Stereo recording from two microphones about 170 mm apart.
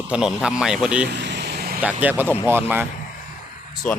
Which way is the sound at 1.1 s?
90° right.